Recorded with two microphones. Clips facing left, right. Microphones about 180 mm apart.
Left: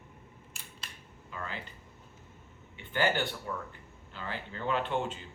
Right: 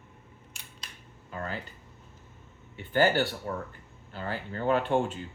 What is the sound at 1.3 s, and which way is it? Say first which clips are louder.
Speech: right 5 dB; 40° right (ahead or behind).